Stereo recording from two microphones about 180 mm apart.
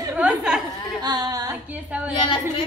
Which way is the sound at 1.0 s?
25° right (ahead or behind).